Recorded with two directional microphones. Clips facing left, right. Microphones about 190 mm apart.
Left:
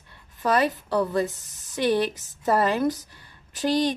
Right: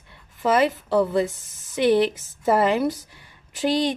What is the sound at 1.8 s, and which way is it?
A woman's voice, 15° right (ahead or behind).